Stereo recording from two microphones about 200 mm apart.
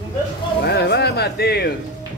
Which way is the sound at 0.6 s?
55° left (ahead or behind).